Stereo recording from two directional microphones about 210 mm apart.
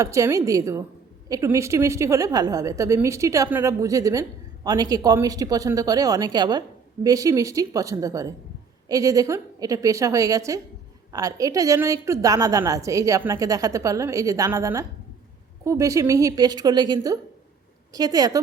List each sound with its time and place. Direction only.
0.0 s a woman's voice: 15° right (ahead or behind)